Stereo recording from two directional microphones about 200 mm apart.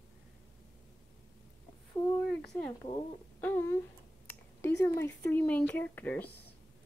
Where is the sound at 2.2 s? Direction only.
5° left (ahead or behind).